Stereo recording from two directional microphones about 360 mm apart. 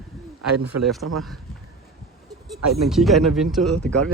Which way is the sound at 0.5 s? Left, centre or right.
Right.